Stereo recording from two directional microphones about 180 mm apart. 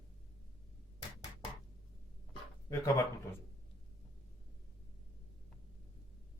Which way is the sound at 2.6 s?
20° left (ahead or behind).